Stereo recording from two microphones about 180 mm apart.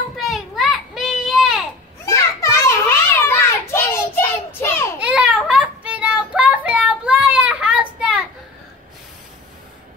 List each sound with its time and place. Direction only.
0.1 s children playing: centre (ahead or behind)
2.0 s children playing: 15° left (ahead or behind)
3.2 s child singing: 15° left (ahead or behind)
4.9 s child singing: 5° right (ahead or behind)